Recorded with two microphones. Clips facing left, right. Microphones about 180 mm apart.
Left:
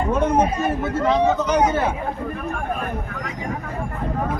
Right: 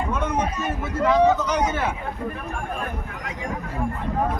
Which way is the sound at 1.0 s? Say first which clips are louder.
Right 1 dB; 30° left (ahead or behind).